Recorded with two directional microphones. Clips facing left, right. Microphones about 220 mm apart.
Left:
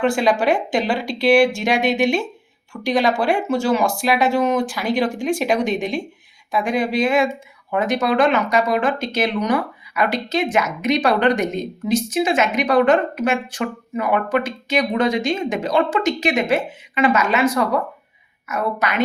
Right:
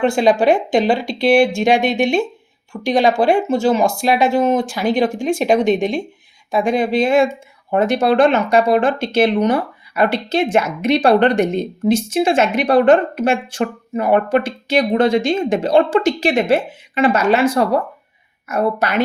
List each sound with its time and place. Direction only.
0.0 s a woman's voice: 25° right (ahead or behind)